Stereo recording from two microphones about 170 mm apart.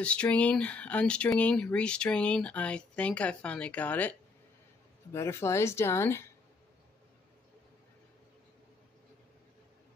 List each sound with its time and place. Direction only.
0.0 s speech: 5° left (ahead or behind)